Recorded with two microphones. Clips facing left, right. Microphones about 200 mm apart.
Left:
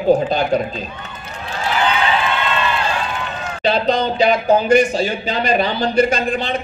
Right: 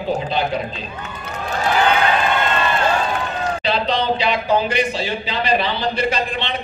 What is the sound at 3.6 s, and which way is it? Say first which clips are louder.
A man's voice: left 6 dB; 45° left (ahead or behind).